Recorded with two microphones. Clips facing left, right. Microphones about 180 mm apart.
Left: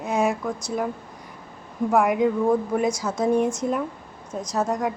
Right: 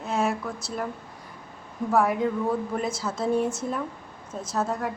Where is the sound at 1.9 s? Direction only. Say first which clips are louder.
Left 3 dB; 15° left (ahead or behind).